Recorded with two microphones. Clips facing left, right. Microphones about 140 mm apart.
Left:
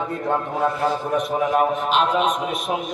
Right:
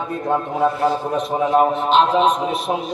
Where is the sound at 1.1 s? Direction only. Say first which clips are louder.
Right 3 dB; 30° right (ahead or behind).